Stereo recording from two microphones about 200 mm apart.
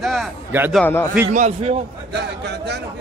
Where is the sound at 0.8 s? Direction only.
10° left (ahead or behind).